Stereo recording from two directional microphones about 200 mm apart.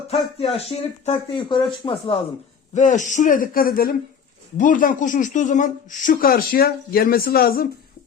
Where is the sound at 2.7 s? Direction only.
40° left (ahead or behind).